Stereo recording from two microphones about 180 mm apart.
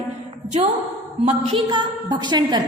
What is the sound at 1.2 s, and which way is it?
A woman's voice, 30° right (ahead or behind).